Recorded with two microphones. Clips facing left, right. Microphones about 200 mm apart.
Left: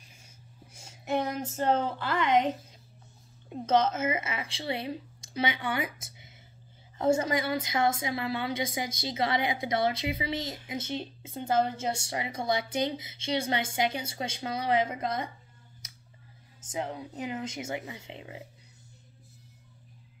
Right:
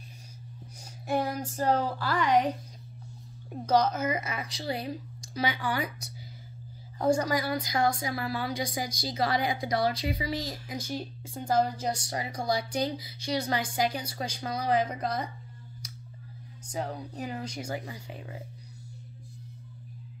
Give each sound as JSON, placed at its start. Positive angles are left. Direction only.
{"t": 0.7, "sound": "speech", "side_deg": 25}
{"t": 3.6, "sound": "a woman's voice", "side_deg": 25}
{"t": 16.6, "sound": "a woman's voice", "side_deg": 20}